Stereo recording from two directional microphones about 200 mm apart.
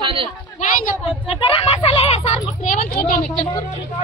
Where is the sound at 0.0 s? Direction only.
25° right (ahead or behind).